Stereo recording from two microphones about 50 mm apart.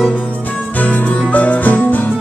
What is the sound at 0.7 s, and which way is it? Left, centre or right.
Music, left.